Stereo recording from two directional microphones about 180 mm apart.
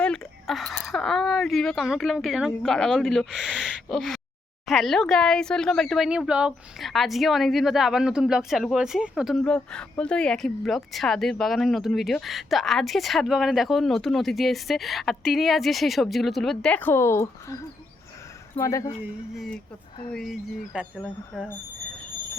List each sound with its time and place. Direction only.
0.0 s a sound: centre (ahead or behind)
0.9 s speech: centre (ahead or behind); by 18.9 s 15° left (ahead or behind)
20.1 s speech: centre (ahead or behind)